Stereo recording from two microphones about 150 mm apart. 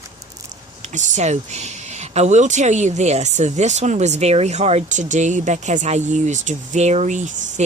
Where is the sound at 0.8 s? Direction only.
50° right (ahead or behind).